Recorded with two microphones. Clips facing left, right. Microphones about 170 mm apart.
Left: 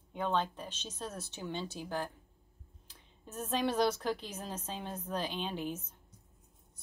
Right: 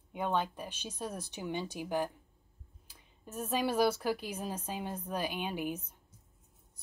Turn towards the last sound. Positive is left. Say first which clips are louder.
# right 2 dB
turn(degrees=-10)  # may be behind; listen again after turning